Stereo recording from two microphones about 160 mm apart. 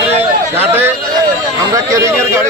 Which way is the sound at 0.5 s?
10° right (ahead or behind).